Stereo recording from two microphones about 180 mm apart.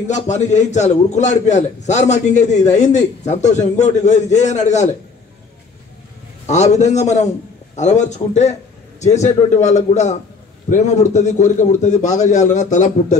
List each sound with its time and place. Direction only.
0.0 s a man's voice: 40° left (ahead or behind)
6.4 s a man's voice: 40° left (ahead or behind)